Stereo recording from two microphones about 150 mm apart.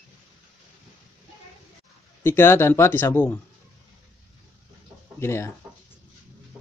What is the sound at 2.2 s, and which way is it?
Speech, 15° left (ahead or behind).